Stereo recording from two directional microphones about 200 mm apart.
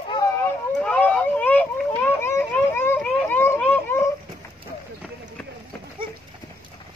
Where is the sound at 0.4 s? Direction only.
10° left (ahead or behind).